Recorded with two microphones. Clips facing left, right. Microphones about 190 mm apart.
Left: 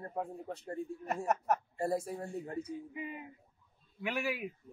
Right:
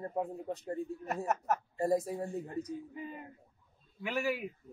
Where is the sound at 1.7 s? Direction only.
20° right (ahead or behind).